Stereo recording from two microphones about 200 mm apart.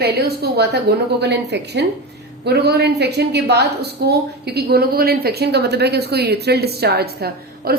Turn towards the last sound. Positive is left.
turn(degrees=-50)  # may be behind; listen again after turning